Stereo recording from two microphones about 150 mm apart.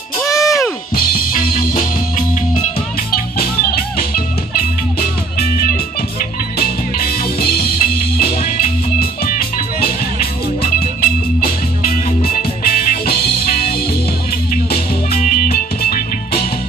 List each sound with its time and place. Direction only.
0.2 s music: 20° left (ahead or behind)
0.9 s music: 75° left (ahead or behind)
3.3 s music: 80° left
6.6 s music: 85° left
14.7 s music: 75° left (ahead or behind)